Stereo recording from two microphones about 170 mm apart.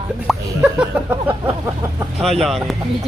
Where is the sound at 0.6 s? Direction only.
10° right (ahead or behind).